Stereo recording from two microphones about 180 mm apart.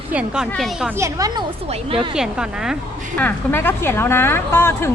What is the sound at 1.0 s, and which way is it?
Speech, 15° right (ahead or behind).